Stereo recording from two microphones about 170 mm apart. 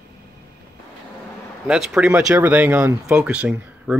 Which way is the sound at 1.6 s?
5° right (ahead or behind).